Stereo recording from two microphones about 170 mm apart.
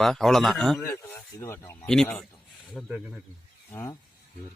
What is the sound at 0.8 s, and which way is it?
Speech, 10° left (ahead or behind).